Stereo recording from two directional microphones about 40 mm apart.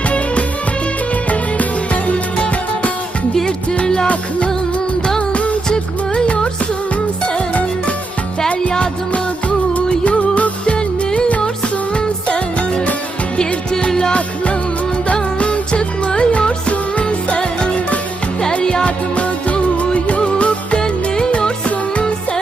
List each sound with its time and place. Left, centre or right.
1.3 s music: left
3.4 s music: centre
4.0 s music: left
5.6 s music: centre
7.3 s music: left
10.0 s music: left
10.8 s music: centre
15.0 s music: left
18.9 s music: left